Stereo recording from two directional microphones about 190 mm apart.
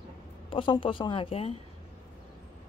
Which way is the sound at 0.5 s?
25° left (ahead or behind).